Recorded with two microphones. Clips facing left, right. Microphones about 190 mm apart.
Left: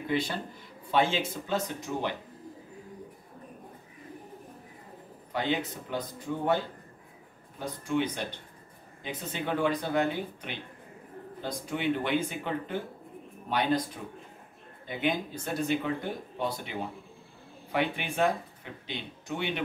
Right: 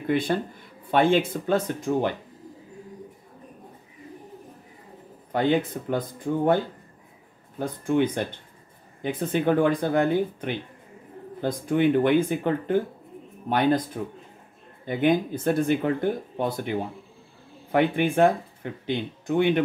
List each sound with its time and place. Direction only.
0.0 s speech: 55° right (ahead or behind)
5.3 s speech: 50° right (ahead or behind)
14.9 s speech: 50° right (ahead or behind)